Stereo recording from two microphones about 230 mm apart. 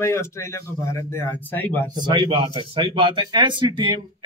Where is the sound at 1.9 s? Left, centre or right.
Right.